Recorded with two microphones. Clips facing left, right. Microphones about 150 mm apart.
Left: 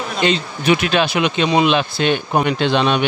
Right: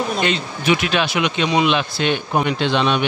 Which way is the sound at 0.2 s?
30° left (ahead or behind).